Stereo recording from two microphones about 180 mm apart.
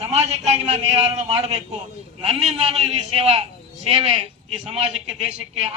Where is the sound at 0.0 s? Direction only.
35° right (ahead or behind).